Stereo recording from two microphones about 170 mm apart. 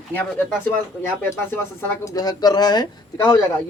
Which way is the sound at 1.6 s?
20° left (ahead or behind).